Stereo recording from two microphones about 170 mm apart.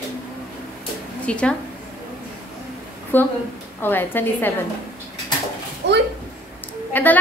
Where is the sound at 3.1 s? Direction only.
10° left (ahead or behind).